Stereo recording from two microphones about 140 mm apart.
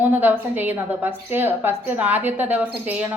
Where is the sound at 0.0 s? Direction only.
15° right (ahead or behind).